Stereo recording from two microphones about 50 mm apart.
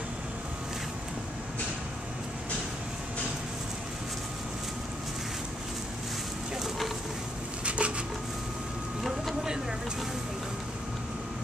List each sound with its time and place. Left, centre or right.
7.6 s wood: right